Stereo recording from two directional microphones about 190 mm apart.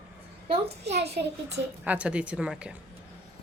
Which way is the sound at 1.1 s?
60° right (ahead or behind).